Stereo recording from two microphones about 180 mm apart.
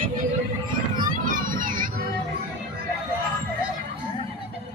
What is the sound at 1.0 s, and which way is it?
Children playing, 50° right (ahead or behind).